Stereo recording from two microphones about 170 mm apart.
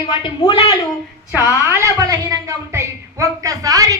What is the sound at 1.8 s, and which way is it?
A woman's voice, 20° right (ahead or behind).